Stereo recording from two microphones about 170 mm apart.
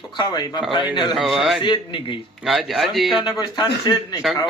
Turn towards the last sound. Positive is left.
turn(degrees=25)  # may be behind; listen again after turning